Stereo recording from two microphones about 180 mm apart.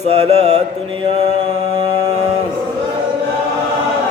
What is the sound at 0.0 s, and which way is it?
Mantra, 35° right (ahead or behind).